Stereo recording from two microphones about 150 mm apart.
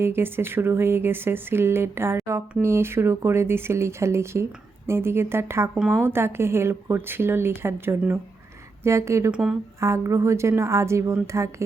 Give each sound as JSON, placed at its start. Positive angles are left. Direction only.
{"t": 0.0, "sound": "speech", "side_deg": -15}
{"t": 9.3, "sound": "a woman's voice", "side_deg": -5}
{"t": 9.8, "sound": "a woman's voice", "side_deg": -20}